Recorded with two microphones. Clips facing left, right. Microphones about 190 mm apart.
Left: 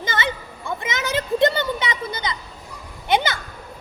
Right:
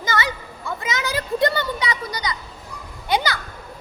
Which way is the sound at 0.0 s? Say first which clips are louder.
Right 1 dB; 25° left (ahead or behind).